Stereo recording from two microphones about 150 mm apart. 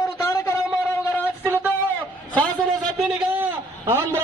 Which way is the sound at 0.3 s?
20° left (ahead or behind).